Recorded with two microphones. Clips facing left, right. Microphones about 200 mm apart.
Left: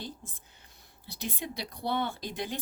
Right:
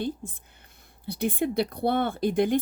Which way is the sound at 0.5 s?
55° right (ahead or behind).